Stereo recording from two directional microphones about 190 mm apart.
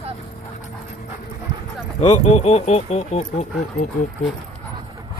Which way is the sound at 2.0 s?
35° left (ahead or behind).